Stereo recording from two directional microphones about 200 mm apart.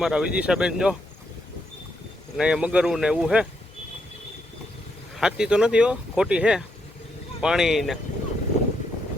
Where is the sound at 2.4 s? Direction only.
5° right (ahead or behind).